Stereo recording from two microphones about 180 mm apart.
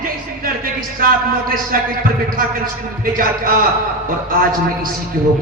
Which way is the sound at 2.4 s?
50° right (ahead or behind).